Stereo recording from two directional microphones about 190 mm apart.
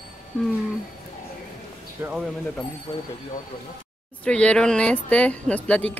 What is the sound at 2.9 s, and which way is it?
Speech, 20° left (ahead or behind).